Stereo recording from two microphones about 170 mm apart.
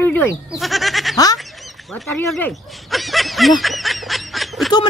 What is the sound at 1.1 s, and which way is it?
Fowl, 20° left (ahead or behind).